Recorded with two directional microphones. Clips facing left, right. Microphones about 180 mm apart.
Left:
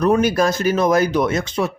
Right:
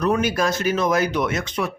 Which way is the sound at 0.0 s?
40° left (ahead or behind).